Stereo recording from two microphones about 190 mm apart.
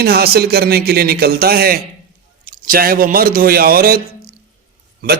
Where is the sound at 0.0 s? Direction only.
55° right (ahead or behind).